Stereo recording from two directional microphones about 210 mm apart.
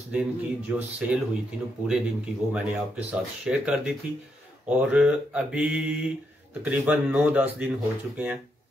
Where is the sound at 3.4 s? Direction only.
5° right (ahead or behind).